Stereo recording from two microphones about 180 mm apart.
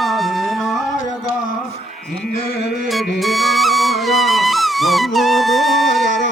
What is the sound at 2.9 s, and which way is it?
Music, centre (ahead or behind).